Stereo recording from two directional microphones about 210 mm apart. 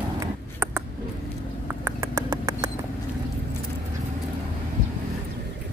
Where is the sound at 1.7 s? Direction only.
10° right (ahead or behind).